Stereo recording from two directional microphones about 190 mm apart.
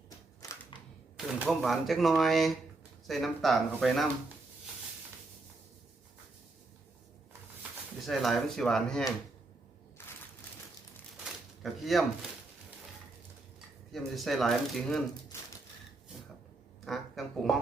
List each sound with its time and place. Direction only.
1.1 s speech: centre (ahead or behind)
8.0 s speech: centre (ahead or behind)
10.0 s a sound: 10° left (ahead or behind)
11.6 s speech: centre (ahead or behind)
13.9 s speech: centre (ahead or behind)
16.8 s speech: centre (ahead or behind)